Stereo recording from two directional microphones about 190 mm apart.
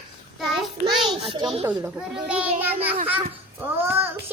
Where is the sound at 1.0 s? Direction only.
25° right (ahead or behind).